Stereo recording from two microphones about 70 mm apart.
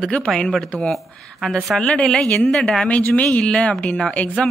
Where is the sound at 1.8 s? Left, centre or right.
Centre.